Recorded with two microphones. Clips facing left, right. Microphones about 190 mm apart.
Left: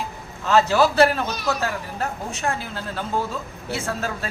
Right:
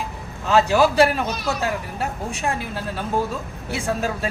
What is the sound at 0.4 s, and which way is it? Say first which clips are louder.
A man's voice: right 1 dB; 15° right (ahead or behind).